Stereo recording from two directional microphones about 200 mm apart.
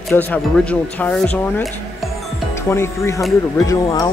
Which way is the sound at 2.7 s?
15° left (ahead or behind).